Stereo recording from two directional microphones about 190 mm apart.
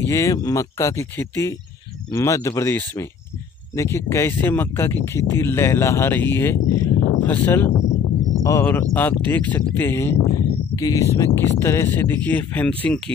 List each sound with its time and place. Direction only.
0.1 s speech: 15° left (ahead or behind)